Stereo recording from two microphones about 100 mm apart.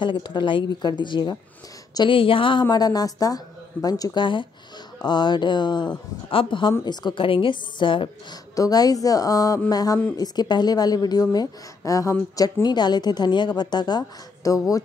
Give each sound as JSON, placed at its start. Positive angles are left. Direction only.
{"t": 0.0, "sound": "a woman's voice", "side_deg": 50}
{"t": 2.0, "sound": "a woman's voice", "side_deg": 60}
{"t": 2.7, "sound": "a woman's voice", "side_deg": 40}
{"t": 6.8, "sound": "a woman's voice", "side_deg": 45}
{"t": 8.5, "sound": "a woman's voice", "side_deg": 40}